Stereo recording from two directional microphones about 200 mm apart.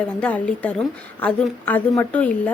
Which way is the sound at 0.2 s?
5° left (ahead or behind).